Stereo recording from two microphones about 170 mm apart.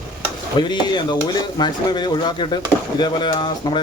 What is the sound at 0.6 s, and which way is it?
Speech, 25° left (ahead or behind).